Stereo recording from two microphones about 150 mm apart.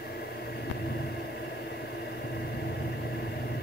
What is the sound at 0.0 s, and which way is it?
Vehicle, 90° left.